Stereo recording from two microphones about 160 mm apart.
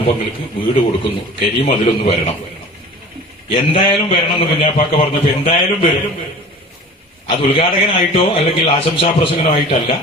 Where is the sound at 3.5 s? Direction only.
35° left (ahead or behind).